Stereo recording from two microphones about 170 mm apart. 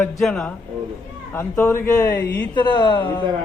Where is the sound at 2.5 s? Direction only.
25° left (ahead or behind).